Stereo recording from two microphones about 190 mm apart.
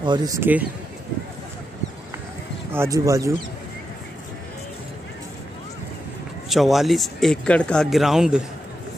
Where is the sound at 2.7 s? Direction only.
15° right (ahead or behind).